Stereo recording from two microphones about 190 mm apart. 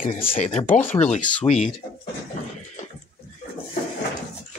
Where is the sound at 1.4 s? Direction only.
35° left (ahead or behind).